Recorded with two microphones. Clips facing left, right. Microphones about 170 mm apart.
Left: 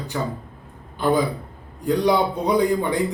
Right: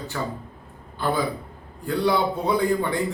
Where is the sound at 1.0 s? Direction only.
20° left (ahead or behind).